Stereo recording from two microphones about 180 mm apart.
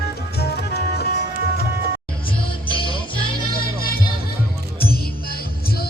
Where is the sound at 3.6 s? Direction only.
55° left (ahead or behind).